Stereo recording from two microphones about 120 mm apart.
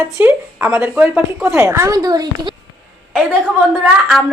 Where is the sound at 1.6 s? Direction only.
25° right (ahead or behind).